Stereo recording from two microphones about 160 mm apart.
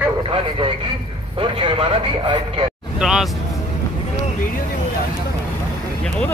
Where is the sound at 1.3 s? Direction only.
30° right (ahead or behind).